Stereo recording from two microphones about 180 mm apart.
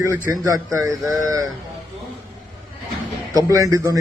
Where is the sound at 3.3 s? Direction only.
20° right (ahead or behind).